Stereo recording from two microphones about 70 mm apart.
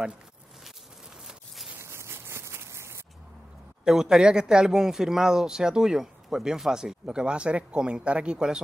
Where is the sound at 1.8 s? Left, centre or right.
Right.